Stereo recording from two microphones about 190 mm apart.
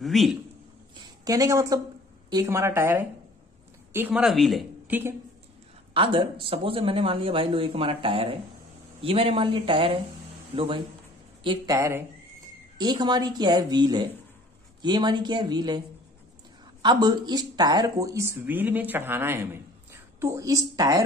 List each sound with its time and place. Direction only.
0.0 s a man's voice: centre (ahead or behind)
0.9 s a sound: 20° right (ahead or behind)
2.2 s speech: 20° right (ahead or behind)
5.9 s speech: 25° right (ahead or behind)
16.8 s speech: 20° right (ahead or behind)